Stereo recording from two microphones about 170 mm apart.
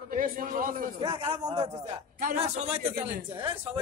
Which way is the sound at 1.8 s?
40° right (ahead or behind).